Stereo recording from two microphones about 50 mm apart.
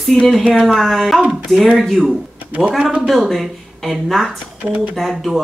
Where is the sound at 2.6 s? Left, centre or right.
Centre.